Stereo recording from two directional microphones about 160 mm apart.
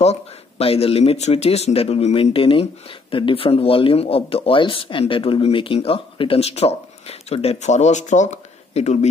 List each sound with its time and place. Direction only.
0.0 s speech: 40° left (ahead or behind)